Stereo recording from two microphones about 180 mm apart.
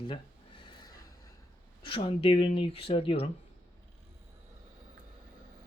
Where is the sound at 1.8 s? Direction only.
25° left (ahead or behind).